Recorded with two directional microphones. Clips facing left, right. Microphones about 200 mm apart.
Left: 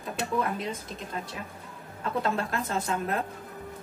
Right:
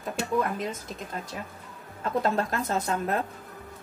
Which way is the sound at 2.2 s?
40° right (ahead or behind).